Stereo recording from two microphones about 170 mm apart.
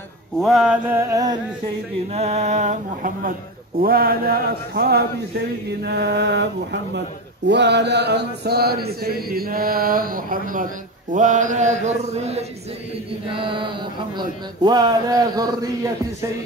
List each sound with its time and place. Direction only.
0.4 s mantra: centre (ahead or behind); by 1.4 s 20° right (ahead or behind)
2.1 s music: 40° right (ahead or behind)
3.8 s chant: 60° right (ahead or behind)
5.7 s a sound: 75° right (ahead or behind)
7.4 s chant: 90° right; by 13.7 s 30° right (ahead or behind)
14.1 s a man's voice: 25° right (ahead or behind)